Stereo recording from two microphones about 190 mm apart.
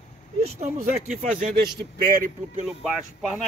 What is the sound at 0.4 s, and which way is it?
Speech, 35° right (ahead or behind).